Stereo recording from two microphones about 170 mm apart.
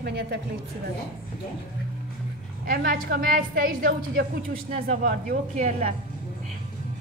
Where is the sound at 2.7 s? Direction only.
60° right (ahead or behind).